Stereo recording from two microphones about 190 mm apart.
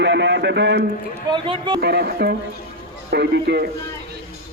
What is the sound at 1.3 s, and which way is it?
Speech, 25° right (ahead or behind).